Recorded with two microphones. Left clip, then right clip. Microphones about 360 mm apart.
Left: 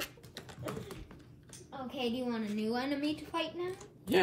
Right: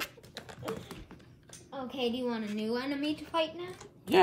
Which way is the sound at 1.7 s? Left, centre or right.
Centre.